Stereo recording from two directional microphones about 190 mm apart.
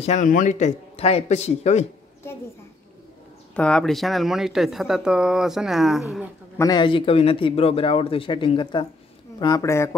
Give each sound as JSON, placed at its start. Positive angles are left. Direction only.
{"t": 0.0, "sound": "a man's voice", "side_deg": 40}
{"t": 3.5, "sound": "speech", "side_deg": 5}
{"t": 6.6, "sound": "speech", "side_deg": 20}